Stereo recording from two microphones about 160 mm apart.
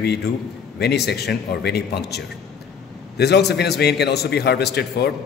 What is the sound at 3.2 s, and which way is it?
A man's voice, 90° left.